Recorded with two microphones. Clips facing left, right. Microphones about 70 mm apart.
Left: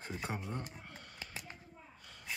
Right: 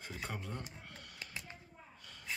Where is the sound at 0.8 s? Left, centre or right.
Centre.